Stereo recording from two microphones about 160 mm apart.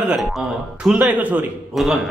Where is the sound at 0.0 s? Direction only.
5° right (ahead or behind).